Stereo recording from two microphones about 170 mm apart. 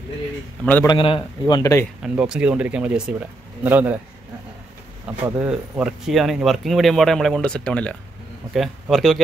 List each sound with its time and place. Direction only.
0.8 s a man's voice: 30° left (ahead or behind)
1.5 s speech: 20° left (ahead or behind)
2.0 s speech: 5° right (ahead or behind)
5.1 s speech: 5° right (ahead or behind)